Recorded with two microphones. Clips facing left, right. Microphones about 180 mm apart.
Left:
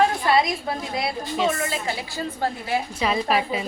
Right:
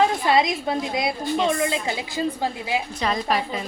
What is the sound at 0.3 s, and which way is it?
A woman's voice, 20° right (ahead or behind).